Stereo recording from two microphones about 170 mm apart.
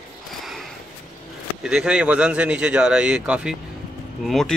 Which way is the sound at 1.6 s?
5° right (ahead or behind).